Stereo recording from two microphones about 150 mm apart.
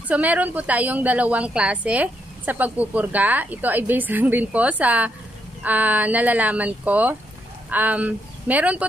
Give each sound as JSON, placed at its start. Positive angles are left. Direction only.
{"t": 0.1, "sound": "a woman's voice", "side_deg": -10}